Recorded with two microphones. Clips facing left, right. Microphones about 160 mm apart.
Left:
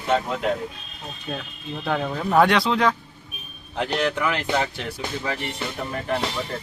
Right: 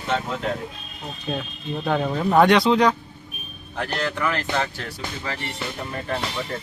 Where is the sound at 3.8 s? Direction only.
15° left (ahead or behind).